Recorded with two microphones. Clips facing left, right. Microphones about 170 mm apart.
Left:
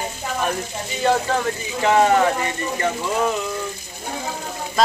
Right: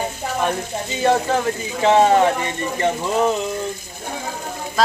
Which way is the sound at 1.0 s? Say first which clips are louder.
Right 2 dB; 20° right (ahead or behind).